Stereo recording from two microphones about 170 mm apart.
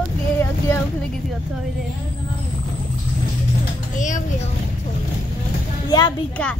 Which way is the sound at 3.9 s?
45° left (ahead or behind).